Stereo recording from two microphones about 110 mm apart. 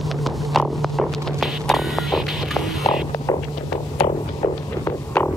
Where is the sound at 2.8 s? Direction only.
30° left (ahead or behind).